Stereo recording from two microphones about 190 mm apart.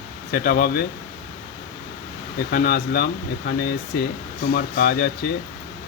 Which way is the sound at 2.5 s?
50° left (ahead or behind).